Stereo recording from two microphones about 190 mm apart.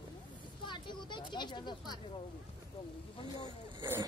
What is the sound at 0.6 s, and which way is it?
Speech, 25° left (ahead or behind).